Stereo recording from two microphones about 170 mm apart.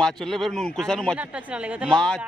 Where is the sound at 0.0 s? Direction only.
Centre (ahead or behind).